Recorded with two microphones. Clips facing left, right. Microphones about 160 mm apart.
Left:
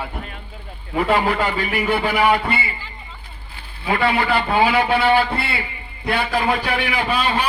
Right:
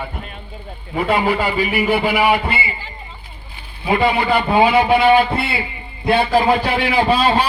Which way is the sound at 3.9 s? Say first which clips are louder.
Right 3 dB; 20° right (ahead or behind).